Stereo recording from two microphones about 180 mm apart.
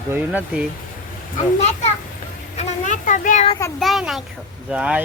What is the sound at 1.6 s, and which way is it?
A child's voice, 35° left (ahead or behind).